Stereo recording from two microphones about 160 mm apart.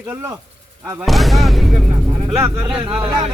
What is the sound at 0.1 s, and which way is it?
Speech, 15° right (ahead or behind).